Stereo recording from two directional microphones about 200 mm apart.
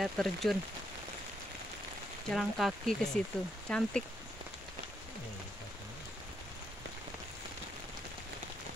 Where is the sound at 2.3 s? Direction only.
Centre (ahead or behind).